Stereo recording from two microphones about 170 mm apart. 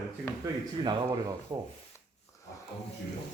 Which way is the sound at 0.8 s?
20° right (ahead or behind).